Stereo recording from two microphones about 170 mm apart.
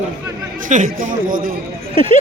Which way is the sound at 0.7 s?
50° right (ahead or behind).